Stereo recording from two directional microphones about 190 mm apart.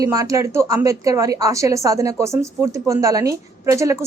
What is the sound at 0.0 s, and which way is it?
A woman's voice, 20° right (ahead or behind).